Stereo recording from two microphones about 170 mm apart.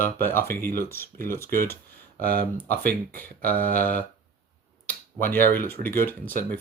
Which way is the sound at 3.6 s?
10° left (ahead or behind).